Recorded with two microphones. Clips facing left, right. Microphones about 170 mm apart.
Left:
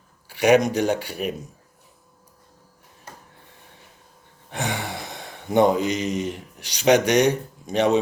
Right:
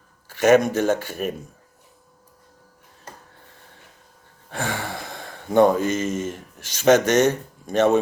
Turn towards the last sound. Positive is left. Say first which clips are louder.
# right 2 dB
turn(degrees=15)  # may be behind; listen again after turning